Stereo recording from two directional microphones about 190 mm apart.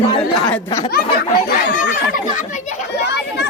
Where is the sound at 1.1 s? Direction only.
55° left (ahead or behind).